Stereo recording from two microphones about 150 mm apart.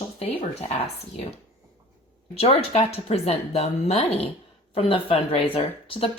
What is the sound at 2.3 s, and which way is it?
A woman's voice, 40° left (ahead or behind).